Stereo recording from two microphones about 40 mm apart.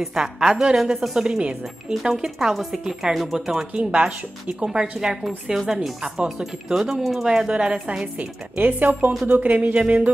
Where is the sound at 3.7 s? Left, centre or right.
Right.